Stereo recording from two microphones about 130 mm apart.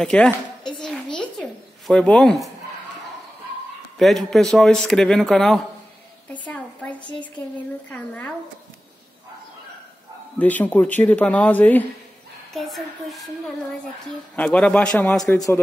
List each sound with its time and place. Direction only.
0.0 s a man's voice: 5° left (ahead or behind)
0.7 s a sound: 5° left (ahead or behind)
4.0 s a man's voice: centre (ahead or behind)
7.0 s a woman's voice: 35° left (ahead or behind)
7.5 s speech: 10° left (ahead or behind)
10.4 s speech: 10° left (ahead or behind)
12.5 s a woman's voice: centre (ahead or behind)
14.3 s a man's voice: 10° left (ahead or behind)